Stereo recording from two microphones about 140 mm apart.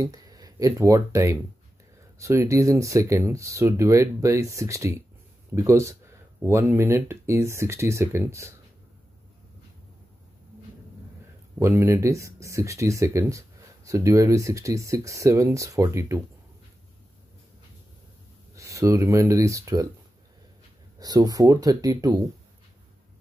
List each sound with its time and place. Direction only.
0.0 s speech: 25° right (ahead or behind)
11.6 s speech: 20° right (ahead or behind)
18.6 s speech: 20° right (ahead or behind)
21.0 s speech: 25° right (ahead or behind)